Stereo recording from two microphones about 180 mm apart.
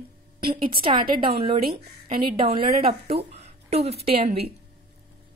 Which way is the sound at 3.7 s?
35° right (ahead or behind).